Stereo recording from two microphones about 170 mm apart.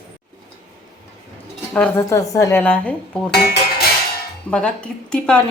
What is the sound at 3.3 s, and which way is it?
Music, 70° left (ahead or behind).